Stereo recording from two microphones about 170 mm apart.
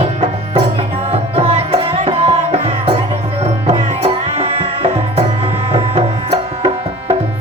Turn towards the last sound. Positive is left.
turn(degrees=-35)  # may be behind; listen again after turning